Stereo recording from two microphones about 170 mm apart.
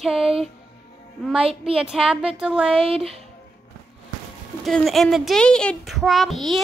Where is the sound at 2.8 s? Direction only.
35° right (ahead or behind).